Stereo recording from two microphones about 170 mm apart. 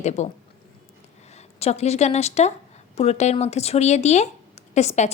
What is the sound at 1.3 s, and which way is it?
Speech, 40° left (ahead or behind).